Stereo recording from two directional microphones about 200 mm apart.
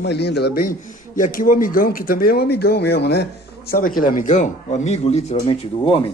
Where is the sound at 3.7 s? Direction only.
45° left (ahead or behind); by 6.0 s 30° left (ahead or behind).